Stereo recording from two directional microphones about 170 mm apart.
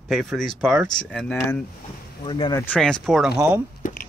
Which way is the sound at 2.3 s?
25° left (ahead or behind).